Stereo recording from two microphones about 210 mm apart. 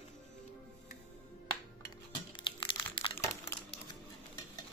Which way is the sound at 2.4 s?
25° left (ahead or behind).